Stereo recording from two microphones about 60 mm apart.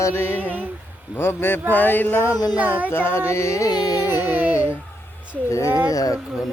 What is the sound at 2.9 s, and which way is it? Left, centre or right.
Carnatic music, left.